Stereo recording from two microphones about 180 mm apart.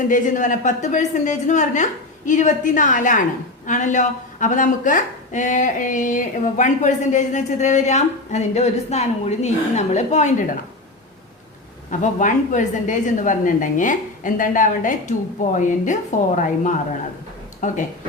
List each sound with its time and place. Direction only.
0.1 s a woman's voice: 45° left (ahead or behind)
11.9 s a woman's voice: 45° left (ahead or behind)